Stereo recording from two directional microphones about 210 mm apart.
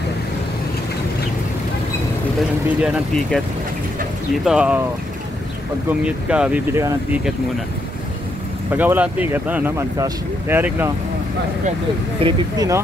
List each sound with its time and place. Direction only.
2.8 s speech: centre (ahead or behind)
4.5 s speech: 5° right (ahead or behind)
5.9 s speech: 5° right (ahead or behind)
8.7 s speech: 10° right (ahead or behind)
12.2 s speech: 20° right (ahead or behind)